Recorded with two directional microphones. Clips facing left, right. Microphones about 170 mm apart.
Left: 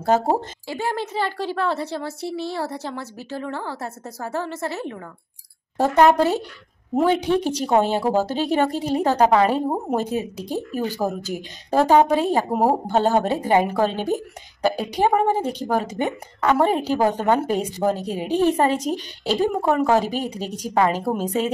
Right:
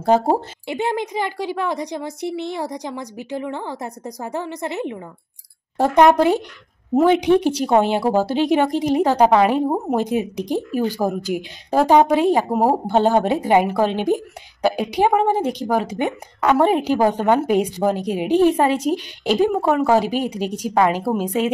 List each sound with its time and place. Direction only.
0.1 s a woman's voice: 15° right (ahead or behind)
6.1 s a woman's voice: 15° right (ahead or behind)